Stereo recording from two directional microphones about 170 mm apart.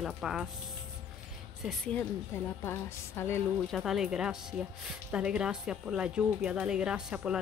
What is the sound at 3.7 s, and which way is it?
Speech, centre (ahead or behind).